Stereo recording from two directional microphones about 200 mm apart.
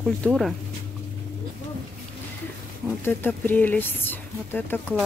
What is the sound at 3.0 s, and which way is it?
Speech, 10° left (ahead or behind).